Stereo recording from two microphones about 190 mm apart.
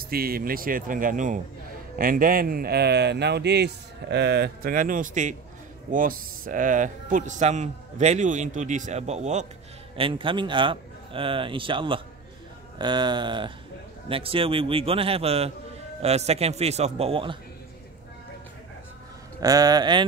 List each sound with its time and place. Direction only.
0.0 s a man's voice: 50° right (ahead or behind); by 17.4 s 25° right (ahead or behind)
19.4 s a man's voice: 20° right (ahead or behind)